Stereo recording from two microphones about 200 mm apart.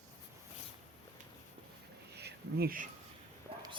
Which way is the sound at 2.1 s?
55° right (ahead or behind).